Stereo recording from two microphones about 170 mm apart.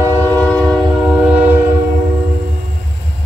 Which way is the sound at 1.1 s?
5° right (ahead or behind).